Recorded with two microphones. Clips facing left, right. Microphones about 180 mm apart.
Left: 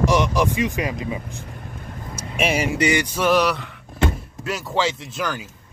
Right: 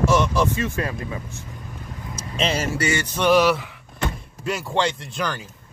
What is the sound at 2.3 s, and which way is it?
Speech, 10° left (ahead or behind).